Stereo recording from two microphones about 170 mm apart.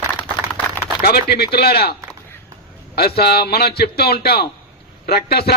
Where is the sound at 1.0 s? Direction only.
65° left (ahead or behind).